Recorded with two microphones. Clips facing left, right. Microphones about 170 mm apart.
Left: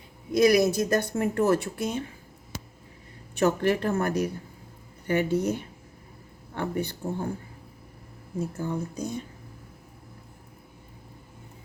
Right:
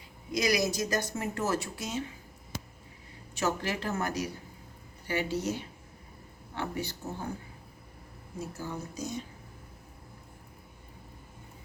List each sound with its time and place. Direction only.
0.3 s speech: 55° left (ahead or behind)
3.3 s speech: 55° left (ahead or behind)
8.4 s speech: 55° left (ahead or behind)